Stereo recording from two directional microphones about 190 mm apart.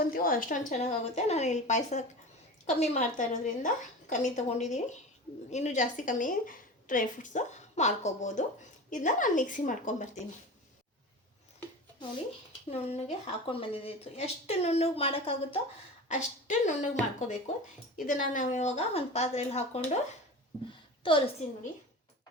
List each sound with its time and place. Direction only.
0.0 s a woman's voice: 50° left (ahead or behind)
12.7 s a woman's voice: 30° left (ahead or behind)
21.0 s a woman's voice: 25° left (ahead or behind)